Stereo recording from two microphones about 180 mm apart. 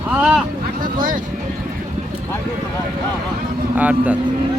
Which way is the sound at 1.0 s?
45° right (ahead or behind).